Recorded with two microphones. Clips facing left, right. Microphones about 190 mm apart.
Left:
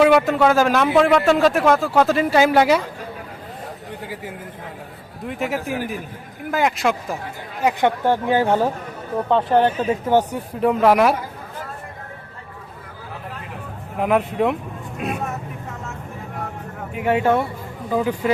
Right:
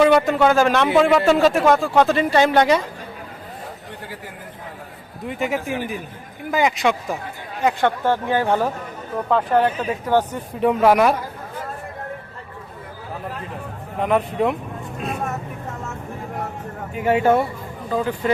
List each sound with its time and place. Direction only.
0.0 s a man's voice: 5° left (ahead or behind)
5.3 s a man's voice: centre (ahead or behind)
7.6 s speech: 15° left (ahead or behind)
9.3 s speech: 25° left (ahead or behind)
10.6 s a man's voice: centre (ahead or behind)
14.0 s a man's voice: 5° left (ahead or behind)
16.9 s a man's voice: centre (ahead or behind)
17.8 s speech: 10° left (ahead or behind)